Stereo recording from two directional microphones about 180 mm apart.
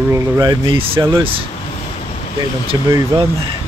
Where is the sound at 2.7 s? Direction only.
20° right (ahead or behind).